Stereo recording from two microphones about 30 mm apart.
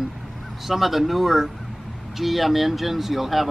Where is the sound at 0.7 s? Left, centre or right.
Centre.